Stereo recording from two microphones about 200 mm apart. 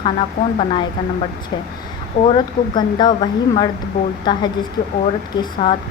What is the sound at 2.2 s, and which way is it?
A woman's voice, 25° left (ahead or behind).